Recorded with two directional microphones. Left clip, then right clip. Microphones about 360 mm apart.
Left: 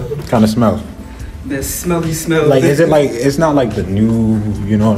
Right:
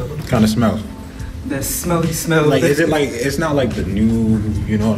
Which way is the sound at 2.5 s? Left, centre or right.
Centre.